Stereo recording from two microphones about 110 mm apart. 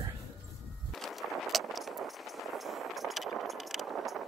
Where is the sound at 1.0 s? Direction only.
Centre (ahead or behind).